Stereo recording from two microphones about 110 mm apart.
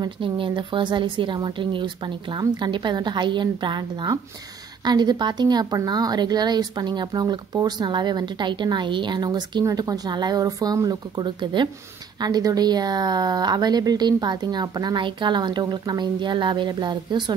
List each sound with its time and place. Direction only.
0.0 s a woman's voice: 50° right (ahead or behind)